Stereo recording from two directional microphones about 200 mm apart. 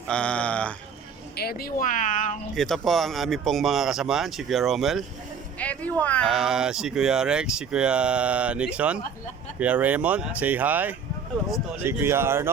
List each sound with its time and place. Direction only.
0.1 s speech: 5° left (ahead or behind)
1.4 s speech: 50° left (ahead or behind)
2.6 s speech: centre (ahead or behind)